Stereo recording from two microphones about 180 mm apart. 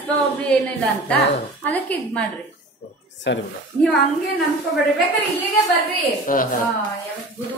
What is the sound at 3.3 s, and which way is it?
Speech, 85° left.